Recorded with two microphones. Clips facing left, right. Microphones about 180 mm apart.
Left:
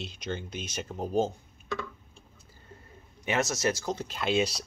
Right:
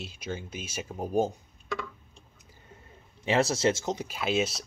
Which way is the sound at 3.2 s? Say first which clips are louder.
Right 4 dB; 30° right (ahead or behind).